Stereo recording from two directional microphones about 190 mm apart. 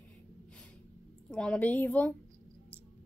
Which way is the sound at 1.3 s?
5° left (ahead or behind).